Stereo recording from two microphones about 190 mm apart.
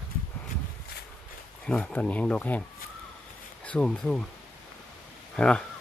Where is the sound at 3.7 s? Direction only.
5° left (ahead or behind).